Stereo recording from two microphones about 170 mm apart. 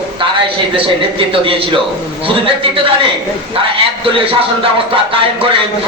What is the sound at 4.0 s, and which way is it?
A man's voice, 30° right (ahead or behind).